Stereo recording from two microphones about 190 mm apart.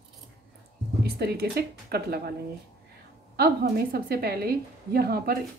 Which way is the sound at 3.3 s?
50° right (ahead or behind).